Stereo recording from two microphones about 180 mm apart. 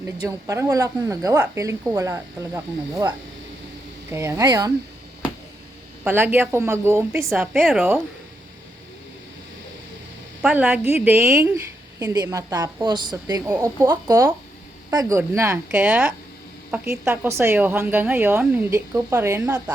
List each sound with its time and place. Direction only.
0.0 s a woman's voice: 15° right (ahead or behind)
6.1 s a woman's voice: 10° right (ahead or behind)
7.3 s a woman's voice: centre (ahead or behind)
10.4 s a woman's voice: 10° right (ahead or behind)